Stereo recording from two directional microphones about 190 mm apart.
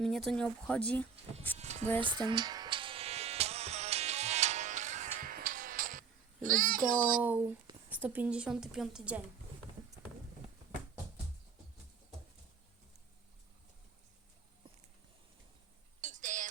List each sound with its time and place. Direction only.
0.0 s a woman's voice: centre (ahead or behind)
1.5 s speech: 35° right (ahead or behind)
2.0 s music: 25° right (ahead or behind); by 7.2 s 45° right (ahead or behind)
7.2 s a woman's voice: 10° right (ahead or behind)
16.0 s a sound: 40° right (ahead or behind)